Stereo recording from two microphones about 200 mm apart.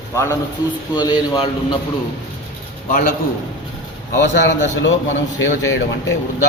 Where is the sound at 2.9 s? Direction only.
45° left (ahead or behind).